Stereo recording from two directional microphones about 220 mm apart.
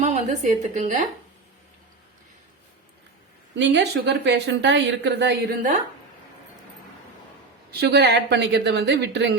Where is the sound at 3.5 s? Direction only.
55° right (ahead or behind).